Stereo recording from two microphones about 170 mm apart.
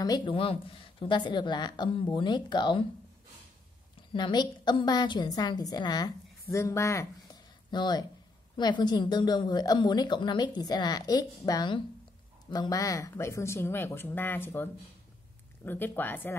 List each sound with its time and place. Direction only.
0.0 s a woman's voice: 25° left (ahead or behind)
4.1 s a woman's voice: 25° left (ahead or behind)